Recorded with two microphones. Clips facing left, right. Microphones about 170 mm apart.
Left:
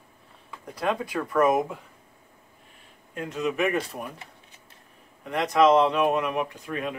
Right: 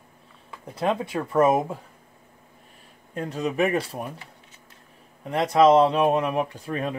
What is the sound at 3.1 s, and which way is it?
Speech, 35° right (ahead or behind).